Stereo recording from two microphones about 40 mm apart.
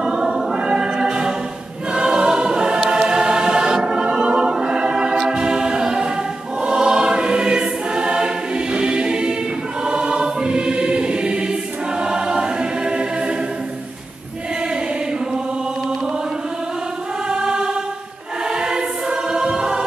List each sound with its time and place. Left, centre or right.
0.0 s choir: centre
5.2 s music: centre
6.6 s choir: right
17.3 s music: right
18.5 s choir: centre